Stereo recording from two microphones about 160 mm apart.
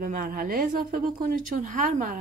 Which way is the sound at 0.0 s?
60° right (ahead or behind).